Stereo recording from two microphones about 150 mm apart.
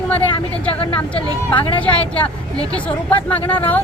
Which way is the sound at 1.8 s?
10° left (ahead or behind).